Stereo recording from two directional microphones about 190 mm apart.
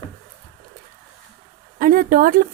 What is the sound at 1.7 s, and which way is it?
Speech, 50° right (ahead or behind).